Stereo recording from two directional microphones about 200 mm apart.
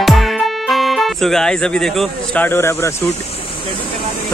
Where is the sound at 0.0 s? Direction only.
Centre (ahead or behind).